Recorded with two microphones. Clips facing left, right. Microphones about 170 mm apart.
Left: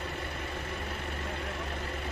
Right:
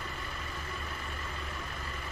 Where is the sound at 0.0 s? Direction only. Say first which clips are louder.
Left 4 dB; 65° left (ahead or behind).